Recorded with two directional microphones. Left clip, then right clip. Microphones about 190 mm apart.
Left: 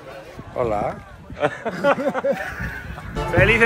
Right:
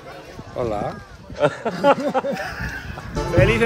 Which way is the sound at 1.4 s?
55° right (ahead or behind).